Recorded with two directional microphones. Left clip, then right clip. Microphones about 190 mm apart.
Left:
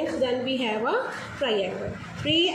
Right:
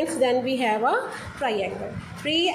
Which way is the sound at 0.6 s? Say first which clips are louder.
Right 5 dB; 25° right (ahead or behind).